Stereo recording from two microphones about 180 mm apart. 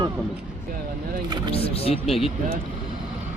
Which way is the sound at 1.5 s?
35° left (ahead or behind).